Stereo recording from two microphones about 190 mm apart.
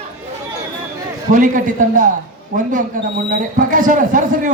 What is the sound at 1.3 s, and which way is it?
Speech, 45° right (ahead or behind).